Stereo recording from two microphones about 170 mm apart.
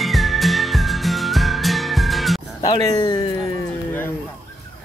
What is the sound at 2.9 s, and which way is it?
Speech, 25° left (ahead or behind).